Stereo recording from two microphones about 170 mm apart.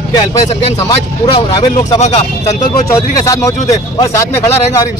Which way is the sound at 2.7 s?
20° left (ahead or behind).